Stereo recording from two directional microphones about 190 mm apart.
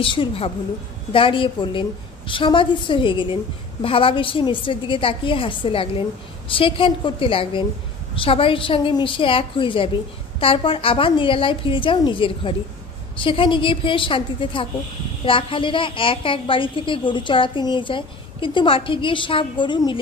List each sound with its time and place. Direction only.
0.0 s a woman's voice: 25° left (ahead or behind)